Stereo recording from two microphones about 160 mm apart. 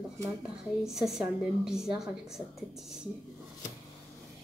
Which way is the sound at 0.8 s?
Centre (ahead or behind).